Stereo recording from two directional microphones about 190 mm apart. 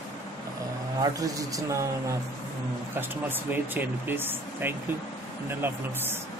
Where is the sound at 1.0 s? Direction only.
20° right (ahead or behind).